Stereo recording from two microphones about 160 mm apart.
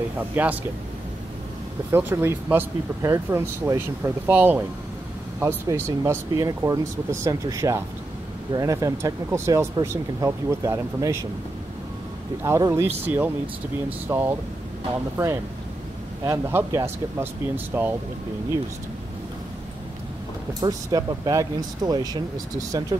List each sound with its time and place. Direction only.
0.2 s speech: 10° right (ahead or behind)
1.9 s speech: 15° right (ahead or behind)
12.4 s speech: 15° right (ahead or behind)
16.3 s speech: 15° right (ahead or behind)
20.6 s speech: 25° right (ahead or behind)